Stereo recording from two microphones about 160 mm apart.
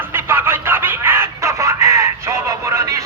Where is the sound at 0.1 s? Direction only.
15° right (ahead or behind).